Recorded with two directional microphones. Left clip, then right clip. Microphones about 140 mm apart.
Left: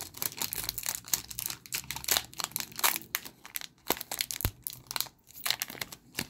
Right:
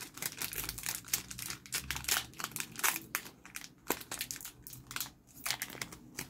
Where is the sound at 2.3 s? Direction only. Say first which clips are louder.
Left 5 dB; 30° left (ahead or behind).